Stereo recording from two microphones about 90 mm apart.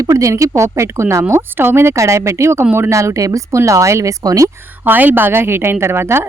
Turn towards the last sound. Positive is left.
turn(degrees=-25)  # may be behind; listen again after turning